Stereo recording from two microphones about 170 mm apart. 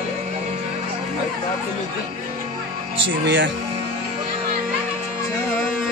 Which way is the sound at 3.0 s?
90° right.